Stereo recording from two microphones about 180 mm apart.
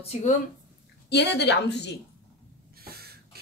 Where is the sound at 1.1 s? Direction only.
70° left (ahead or behind).